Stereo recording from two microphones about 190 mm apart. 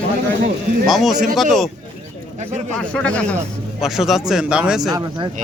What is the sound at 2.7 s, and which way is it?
Speech, 5° left (ahead or behind).